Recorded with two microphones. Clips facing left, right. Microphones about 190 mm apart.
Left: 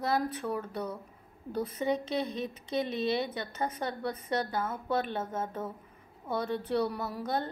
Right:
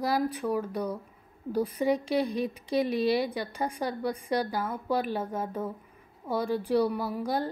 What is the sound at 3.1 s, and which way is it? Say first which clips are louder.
Speech: right 3 dB; 10° right (ahead or behind).